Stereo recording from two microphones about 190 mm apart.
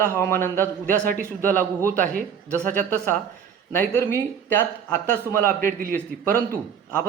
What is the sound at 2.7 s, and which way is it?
A man's voice, 10° left (ahead or behind).